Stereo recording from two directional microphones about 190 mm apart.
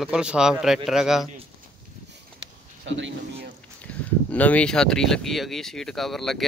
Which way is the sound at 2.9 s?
75° right (ahead or behind).